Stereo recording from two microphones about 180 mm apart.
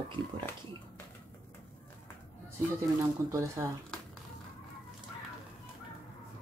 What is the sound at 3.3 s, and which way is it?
Speech, 15° right (ahead or behind).